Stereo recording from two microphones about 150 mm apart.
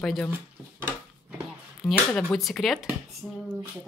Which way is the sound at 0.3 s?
15° right (ahead or behind).